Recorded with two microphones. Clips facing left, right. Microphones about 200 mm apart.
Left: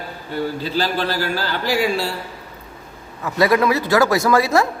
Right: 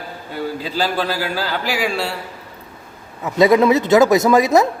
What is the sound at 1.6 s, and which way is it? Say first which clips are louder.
Speech: left 5 dB; 75° right (ahead or behind).